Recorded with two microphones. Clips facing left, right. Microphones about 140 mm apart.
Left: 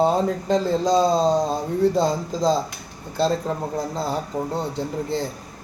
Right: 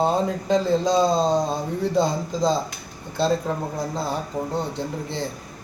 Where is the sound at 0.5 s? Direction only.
35° left (ahead or behind).